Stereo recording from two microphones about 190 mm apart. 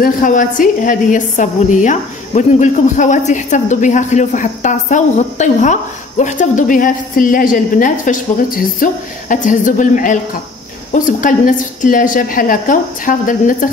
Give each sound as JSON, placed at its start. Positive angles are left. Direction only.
{"t": 0.0, "sound": "a woman's voice", "side_deg": 45}